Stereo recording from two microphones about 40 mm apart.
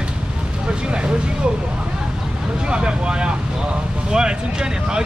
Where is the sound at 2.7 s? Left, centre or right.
Right.